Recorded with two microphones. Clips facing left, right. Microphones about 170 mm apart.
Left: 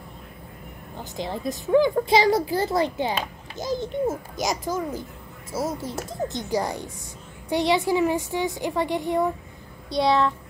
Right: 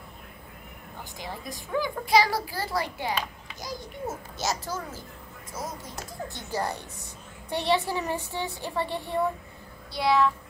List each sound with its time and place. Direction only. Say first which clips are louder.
1.1 s a child's voice: left 10 dB; 25° left (ahead or behind)
4.4 s speech: left 3 dB; 15° left (ahead or behind)
5.5 s a child's voice: left 9 dB; 30° left (ahead or behind)